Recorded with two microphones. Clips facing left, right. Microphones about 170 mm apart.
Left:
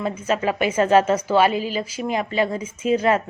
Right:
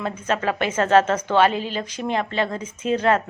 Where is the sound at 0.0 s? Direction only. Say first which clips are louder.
Left 2 dB; 10° left (ahead or behind).